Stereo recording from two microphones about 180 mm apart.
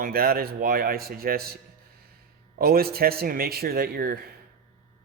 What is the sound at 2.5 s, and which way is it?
Speech, 60° right (ahead or behind).